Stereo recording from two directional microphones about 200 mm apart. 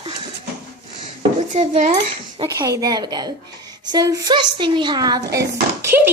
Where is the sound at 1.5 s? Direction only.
35° right (ahead or behind).